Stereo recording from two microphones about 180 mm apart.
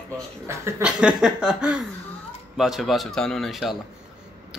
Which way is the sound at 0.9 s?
5° right (ahead or behind).